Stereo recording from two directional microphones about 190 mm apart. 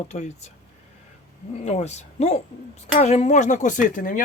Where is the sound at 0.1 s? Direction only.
35° left (ahead or behind).